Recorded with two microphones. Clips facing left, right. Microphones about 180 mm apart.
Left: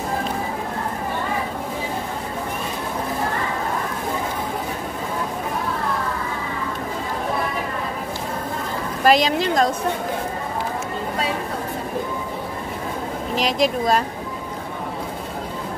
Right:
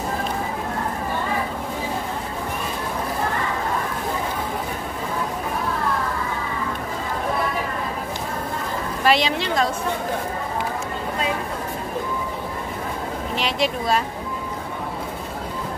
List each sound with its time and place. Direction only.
9.0 s a woman's voice: 40° left (ahead or behind)
13.4 s a woman's voice: 40° left (ahead or behind)